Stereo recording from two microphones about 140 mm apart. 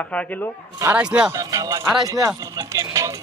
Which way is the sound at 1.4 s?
25° right (ahead or behind).